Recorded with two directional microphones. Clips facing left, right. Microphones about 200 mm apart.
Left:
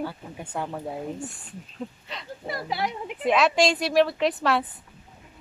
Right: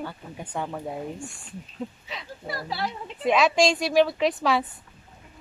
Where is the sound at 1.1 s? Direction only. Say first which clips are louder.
Left 3 dB; 20° left (ahead or behind).